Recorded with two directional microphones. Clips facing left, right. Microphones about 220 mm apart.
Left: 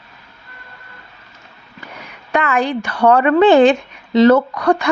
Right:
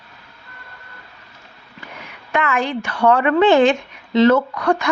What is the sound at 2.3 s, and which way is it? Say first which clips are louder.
A woman's voice: left 3 dB; 35° left (ahead or behind).